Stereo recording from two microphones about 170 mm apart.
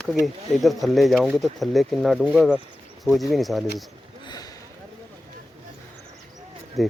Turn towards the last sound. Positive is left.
turn(degrees=0)  # may be behind; listen again after turning